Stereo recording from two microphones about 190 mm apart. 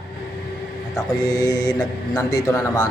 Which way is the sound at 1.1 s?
20° left (ahead or behind).